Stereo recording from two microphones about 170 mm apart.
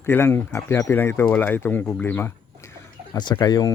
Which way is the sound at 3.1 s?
25° left (ahead or behind).